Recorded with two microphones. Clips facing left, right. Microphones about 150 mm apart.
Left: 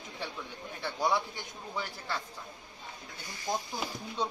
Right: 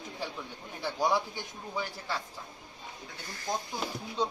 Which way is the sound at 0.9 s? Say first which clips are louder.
Right 1 dB; 10° right (ahead or behind).